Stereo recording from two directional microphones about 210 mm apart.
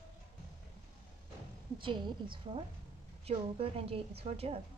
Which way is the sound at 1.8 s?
25° right (ahead or behind).